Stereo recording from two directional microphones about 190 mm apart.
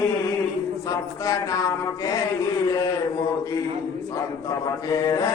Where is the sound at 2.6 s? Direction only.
15° left (ahead or behind).